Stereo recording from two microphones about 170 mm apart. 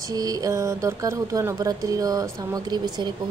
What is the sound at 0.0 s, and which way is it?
Speech, 20° right (ahead or behind).